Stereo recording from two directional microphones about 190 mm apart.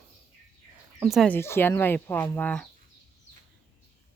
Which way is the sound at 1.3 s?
15° left (ahead or behind).